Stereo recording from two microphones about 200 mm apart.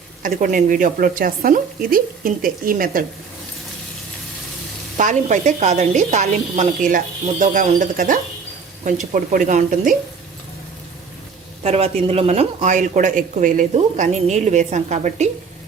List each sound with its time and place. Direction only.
0.2 s speech: 40° right (ahead or behind)
4.9 s speech: 40° right (ahead or behind)
11.6 s speech: 30° right (ahead or behind)